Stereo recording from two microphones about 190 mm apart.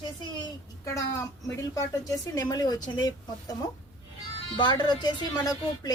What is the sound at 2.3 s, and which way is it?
Speech, 20° left (ahead or behind).